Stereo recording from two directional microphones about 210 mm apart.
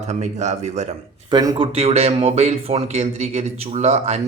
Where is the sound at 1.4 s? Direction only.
20° right (ahead or behind).